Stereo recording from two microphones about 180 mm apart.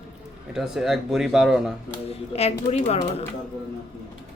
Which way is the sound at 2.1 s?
35° left (ahead or behind).